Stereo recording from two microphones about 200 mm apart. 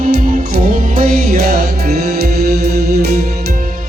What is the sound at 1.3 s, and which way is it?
Music, 50° right (ahead or behind).